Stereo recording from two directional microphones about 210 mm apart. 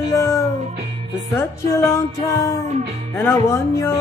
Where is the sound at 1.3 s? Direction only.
15° left (ahead or behind).